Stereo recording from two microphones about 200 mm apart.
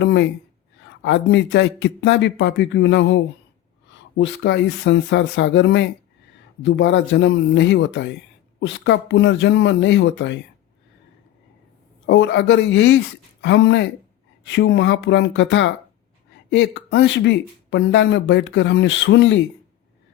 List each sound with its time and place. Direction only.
0.0 s speech: 60° left (ahead or behind)
4.2 s speech: 60° left (ahead or behind)
12.0 s speech: 60° left (ahead or behind)